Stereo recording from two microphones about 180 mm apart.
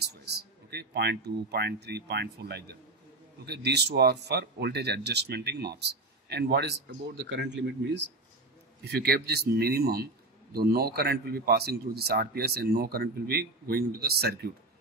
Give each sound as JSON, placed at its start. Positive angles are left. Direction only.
{"t": 0.0, "sound": "speech", "side_deg": -65}
{"t": 8.8, "sound": "speech", "side_deg": -65}